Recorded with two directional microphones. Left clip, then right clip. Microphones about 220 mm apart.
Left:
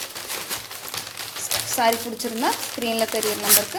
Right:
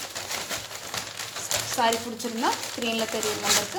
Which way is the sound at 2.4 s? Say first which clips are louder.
Left 2 dB; 25° left (ahead or behind).